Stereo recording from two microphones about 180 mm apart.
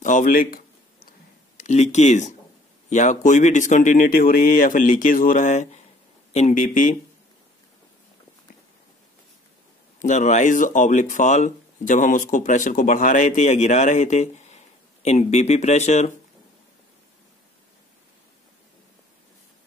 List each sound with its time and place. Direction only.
0.0 s a sound: 45° left (ahead or behind)
1.6 s speech: 40° left (ahead or behind)
9.9 s speech: 45° left (ahead or behind)